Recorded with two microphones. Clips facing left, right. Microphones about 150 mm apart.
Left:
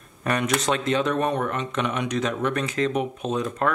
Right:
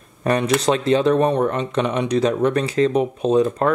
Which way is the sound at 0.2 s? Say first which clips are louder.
Right 6 dB; 30° right (ahead or behind).